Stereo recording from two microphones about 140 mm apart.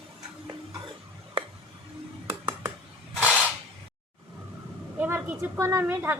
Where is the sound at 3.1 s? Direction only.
5° right (ahead or behind).